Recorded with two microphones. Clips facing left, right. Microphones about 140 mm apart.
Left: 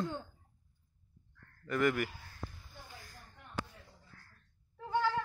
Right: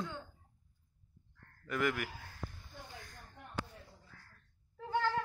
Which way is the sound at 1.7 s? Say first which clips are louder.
Left 4 dB; centre (ahead or behind).